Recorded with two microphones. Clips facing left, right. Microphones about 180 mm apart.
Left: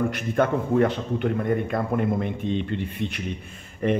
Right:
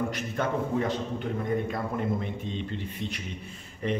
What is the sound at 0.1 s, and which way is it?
A man's voice, 60° left (ahead or behind).